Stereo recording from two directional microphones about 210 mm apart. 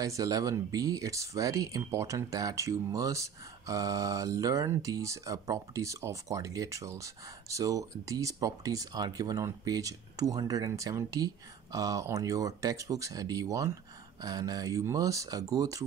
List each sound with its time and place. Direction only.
0.0 s speech: 15° right (ahead or behind)